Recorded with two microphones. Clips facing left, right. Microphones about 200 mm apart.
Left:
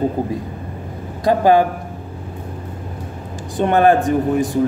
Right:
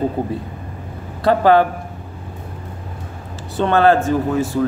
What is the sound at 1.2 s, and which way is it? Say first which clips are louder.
Speech: even; 15° left (ahead or behind).